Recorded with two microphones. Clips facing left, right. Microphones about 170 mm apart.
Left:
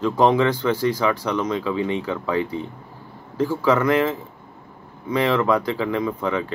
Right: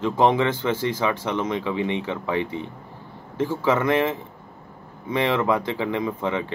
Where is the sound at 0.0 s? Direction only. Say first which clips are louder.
Left 2 dB; 25° right (ahead or behind).